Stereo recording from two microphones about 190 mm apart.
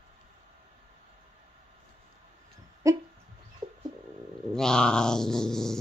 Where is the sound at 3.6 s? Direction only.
20° right (ahead or behind).